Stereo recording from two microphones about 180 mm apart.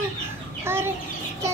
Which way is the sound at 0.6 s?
15° right (ahead or behind).